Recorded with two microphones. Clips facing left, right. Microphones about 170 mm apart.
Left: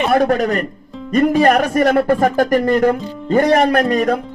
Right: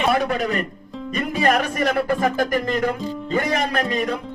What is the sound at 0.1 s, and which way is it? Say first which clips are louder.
Speech: left 6 dB; 45° left (ahead or behind).